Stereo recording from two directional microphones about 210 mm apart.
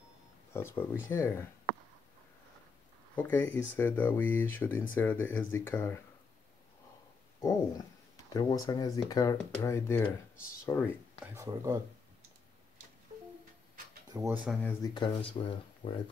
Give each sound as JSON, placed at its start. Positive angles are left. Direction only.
{"t": 0.5, "sound": "speech", "side_deg": 10}
{"t": 3.2, "sound": "speech", "side_deg": 10}
{"t": 8.3, "sound": "speech", "side_deg": 15}
{"t": 11.3, "sound": "speech", "side_deg": -15}
{"t": 14.1, "sound": "speech", "side_deg": -10}
{"t": 14.6, "sound": "speech", "side_deg": 10}
{"t": 15.0, "sound": "speech", "side_deg": 25}